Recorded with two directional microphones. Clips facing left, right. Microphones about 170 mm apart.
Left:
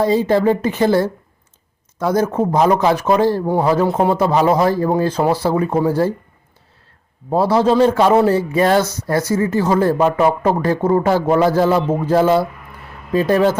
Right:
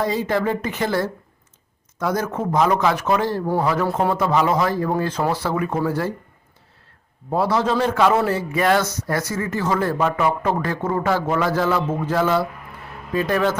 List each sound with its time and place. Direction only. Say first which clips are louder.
0.0 s a woman's voice: left 7 dB; 30° left (ahead or behind)
7.3 s a man's voice: left 6 dB; 30° left (ahead or behind)